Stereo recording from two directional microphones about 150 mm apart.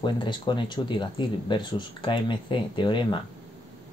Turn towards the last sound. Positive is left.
turn(degrees=30)  # may be behind; listen again after turning